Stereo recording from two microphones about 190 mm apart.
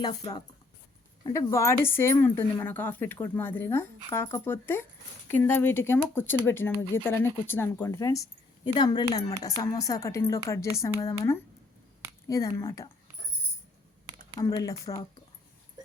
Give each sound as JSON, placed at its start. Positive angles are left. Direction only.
{"t": 0.0, "sound": "speech", "side_deg": 30}
{"t": 1.2, "sound": "speech", "side_deg": 15}
{"t": 14.3, "sound": "speech", "side_deg": 20}